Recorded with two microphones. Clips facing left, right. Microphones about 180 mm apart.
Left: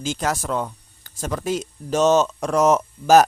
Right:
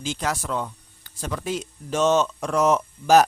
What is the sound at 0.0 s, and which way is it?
Speech, 45° left (ahead or behind).